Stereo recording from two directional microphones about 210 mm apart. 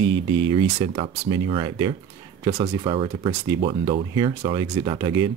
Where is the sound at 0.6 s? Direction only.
25° right (ahead or behind).